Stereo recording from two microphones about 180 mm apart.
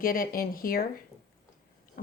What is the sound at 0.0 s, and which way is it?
Speech, 55° left (ahead or behind).